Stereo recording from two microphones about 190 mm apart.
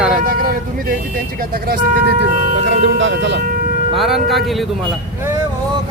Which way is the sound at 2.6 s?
70° right (ahead or behind).